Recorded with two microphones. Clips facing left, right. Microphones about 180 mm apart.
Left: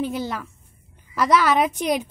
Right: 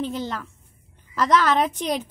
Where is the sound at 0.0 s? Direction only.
10° left (ahead or behind).